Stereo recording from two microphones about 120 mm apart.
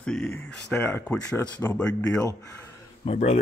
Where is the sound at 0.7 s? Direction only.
15° left (ahead or behind).